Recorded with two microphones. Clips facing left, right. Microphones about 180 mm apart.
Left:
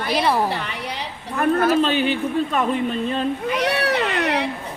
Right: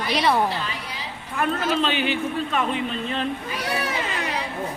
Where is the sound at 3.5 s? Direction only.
70° left (ahead or behind).